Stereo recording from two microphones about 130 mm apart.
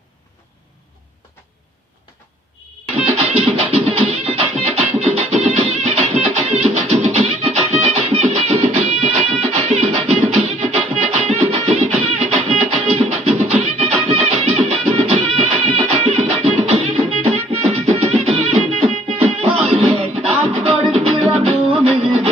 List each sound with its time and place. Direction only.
3.1 s music: 50° right (ahead or behind)